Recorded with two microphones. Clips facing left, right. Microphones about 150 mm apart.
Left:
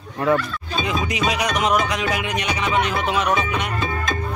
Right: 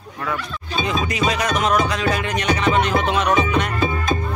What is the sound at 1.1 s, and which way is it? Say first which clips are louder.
Music: right 1 dB; 10° left (ahead or behind).